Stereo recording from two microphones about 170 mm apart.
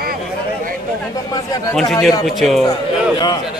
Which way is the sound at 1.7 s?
Centre (ahead or behind).